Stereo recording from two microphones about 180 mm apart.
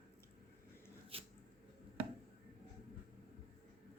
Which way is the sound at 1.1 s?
30° right (ahead or behind).